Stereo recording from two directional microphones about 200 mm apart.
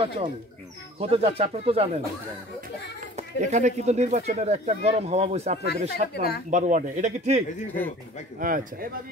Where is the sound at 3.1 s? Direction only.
35° right (ahead or behind).